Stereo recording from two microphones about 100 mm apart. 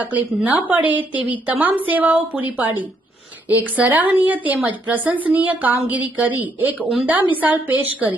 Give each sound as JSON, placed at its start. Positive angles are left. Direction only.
{"t": 0.0, "sound": "a woman's voice", "side_deg": -15}